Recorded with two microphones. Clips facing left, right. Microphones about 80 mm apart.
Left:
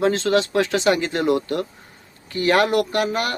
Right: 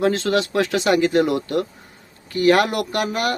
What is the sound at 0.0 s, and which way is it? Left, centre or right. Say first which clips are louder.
Speech: even; left.